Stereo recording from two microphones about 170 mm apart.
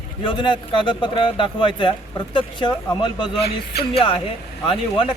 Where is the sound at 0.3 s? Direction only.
30° left (ahead or behind).